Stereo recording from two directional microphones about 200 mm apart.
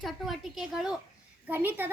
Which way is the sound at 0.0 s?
Centre (ahead or behind).